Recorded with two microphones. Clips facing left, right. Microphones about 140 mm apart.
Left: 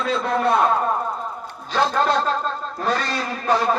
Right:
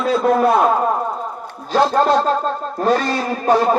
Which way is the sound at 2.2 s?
45° right (ahead or behind).